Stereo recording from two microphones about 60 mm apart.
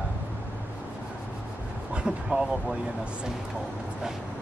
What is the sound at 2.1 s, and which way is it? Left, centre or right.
Speech, centre.